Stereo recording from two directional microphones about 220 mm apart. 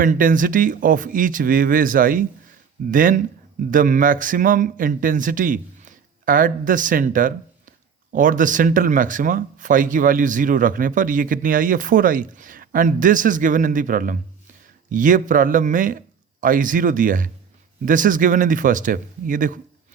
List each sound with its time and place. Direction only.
0.0 s speech: 40° right (ahead or behind)